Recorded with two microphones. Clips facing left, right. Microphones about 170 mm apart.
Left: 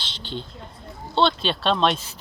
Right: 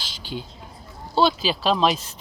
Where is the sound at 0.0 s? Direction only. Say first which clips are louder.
Even; 5° right (ahead or behind).